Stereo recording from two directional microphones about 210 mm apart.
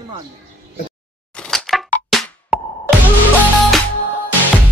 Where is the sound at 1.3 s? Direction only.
5° left (ahead or behind).